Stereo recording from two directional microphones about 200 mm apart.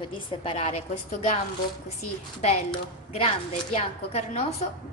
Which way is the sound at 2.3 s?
35° left (ahead or behind).